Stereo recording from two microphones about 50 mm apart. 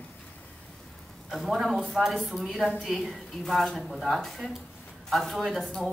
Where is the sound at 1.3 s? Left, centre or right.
Centre.